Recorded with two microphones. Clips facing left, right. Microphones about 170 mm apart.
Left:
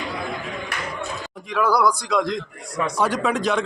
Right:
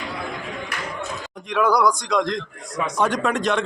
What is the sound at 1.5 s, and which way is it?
A man's voice, 5° left (ahead or behind).